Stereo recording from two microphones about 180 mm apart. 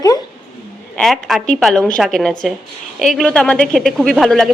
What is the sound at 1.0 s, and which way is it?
A woman's voice, centre (ahead or behind).